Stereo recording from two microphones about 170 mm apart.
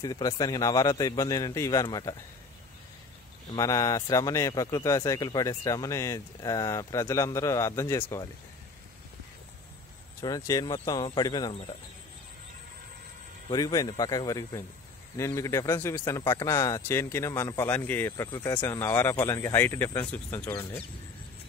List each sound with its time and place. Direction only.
0.0 s speech: 25° left (ahead or behind)
3.4 s speech: 20° left (ahead or behind)
10.2 s speech: 20° left (ahead or behind)
13.5 s speech: 20° left (ahead or behind)